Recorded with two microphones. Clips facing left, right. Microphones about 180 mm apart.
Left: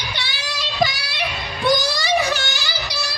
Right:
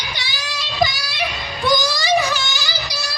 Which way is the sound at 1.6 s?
60° left (ahead or behind).